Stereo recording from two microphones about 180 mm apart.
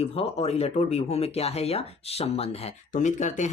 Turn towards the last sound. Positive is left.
turn(degrees=40)  # may be behind; listen again after turning